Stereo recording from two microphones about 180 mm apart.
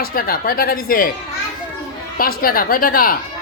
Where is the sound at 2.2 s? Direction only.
55° left (ahead or behind).